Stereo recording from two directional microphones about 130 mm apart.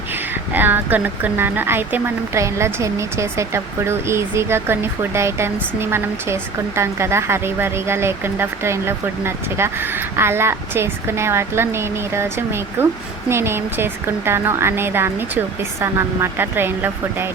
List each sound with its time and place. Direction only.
0.5 s speech: 15° right (ahead or behind)